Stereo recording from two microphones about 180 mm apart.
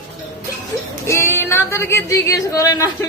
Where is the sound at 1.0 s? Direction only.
15° left (ahead or behind).